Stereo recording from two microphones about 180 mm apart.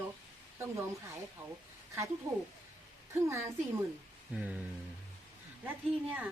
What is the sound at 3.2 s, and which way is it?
A woman's voice, 15° right (ahead or behind).